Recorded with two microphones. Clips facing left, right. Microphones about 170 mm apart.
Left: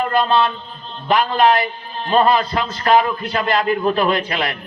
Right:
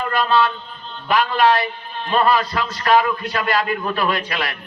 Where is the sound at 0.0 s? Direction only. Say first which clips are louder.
Left 2 dB; 25° left (ahead or behind).